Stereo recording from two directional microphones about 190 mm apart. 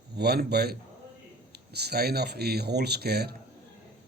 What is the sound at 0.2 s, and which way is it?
Speech, 55° right (ahead or behind).